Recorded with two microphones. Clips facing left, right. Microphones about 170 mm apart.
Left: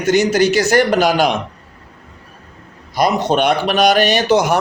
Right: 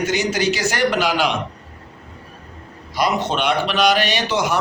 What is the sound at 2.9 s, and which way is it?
A man's voice, 45° left (ahead or behind).